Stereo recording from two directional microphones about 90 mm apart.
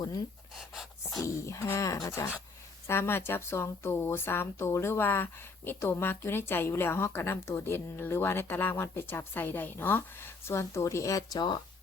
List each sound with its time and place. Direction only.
0.5 s pant: 5° right (ahead or behind)
1.2 s speech: 35° left (ahead or behind)
11.3 s speech: 55° left (ahead or behind)